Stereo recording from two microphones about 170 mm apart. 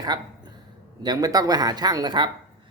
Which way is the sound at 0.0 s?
25° right (ahead or behind).